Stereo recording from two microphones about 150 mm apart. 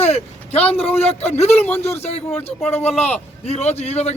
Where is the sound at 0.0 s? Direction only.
45° left (ahead or behind).